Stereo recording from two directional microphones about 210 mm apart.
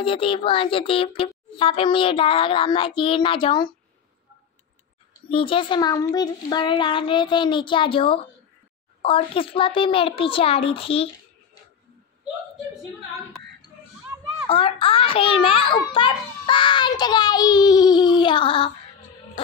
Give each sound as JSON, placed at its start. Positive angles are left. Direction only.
{"t": 0.0, "sound": "a child's voice", "side_deg": 25}
{"t": 5.3, "sound": "a child's voice", "side_deg": 25}
{"t": 14.5, "sound": "a child's voice", "side_deg": 25}